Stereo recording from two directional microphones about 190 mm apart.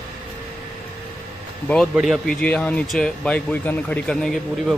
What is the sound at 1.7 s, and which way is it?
Speech, centre (ahead or behind).